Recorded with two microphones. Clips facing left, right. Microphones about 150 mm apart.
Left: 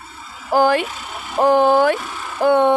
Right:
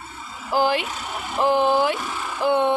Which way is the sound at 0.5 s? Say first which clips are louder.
Left 5 dB; 50° left (ahead or behind).